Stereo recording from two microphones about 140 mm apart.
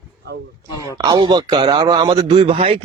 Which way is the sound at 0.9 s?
30° right (ahead or behind).